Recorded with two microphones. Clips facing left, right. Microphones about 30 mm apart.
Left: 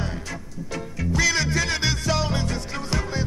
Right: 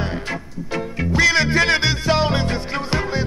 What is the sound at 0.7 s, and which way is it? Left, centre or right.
Music, right.